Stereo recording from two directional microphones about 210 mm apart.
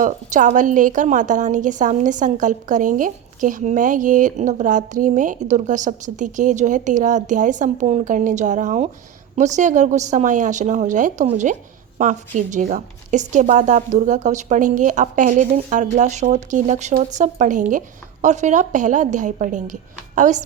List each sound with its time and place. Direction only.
0.0 s a woman's voice: 35° right (ahead or behind)